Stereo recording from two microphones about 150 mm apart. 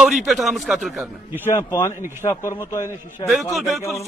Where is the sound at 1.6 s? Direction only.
20° left (ahead or behind).